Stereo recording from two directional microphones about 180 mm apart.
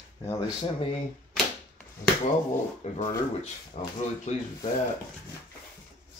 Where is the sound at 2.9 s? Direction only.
40° left (ahead or behind).